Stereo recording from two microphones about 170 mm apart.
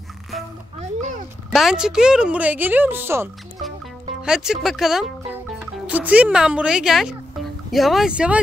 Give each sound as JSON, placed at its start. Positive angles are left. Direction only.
{"t": 0.7, "sound": "speech", "side_deg": -45}
{"t": 1.5, "sound": "a woman's voice", "side_deg": 0}
{"t": 3.6, "sound": "speech", "side_deg": 0}